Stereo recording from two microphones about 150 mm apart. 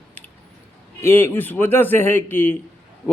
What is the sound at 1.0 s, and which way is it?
Speech, 15° left (ahead or behind).